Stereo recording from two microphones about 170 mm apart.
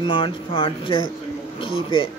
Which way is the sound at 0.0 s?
30° left (ahead or behind).